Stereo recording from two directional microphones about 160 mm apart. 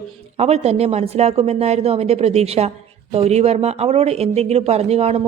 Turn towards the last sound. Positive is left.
turn(degrees=-40)  # may be behind; listen again after turning